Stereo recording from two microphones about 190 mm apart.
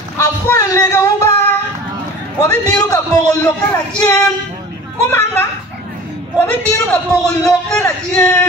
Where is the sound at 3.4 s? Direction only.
15° left (ahead or behind).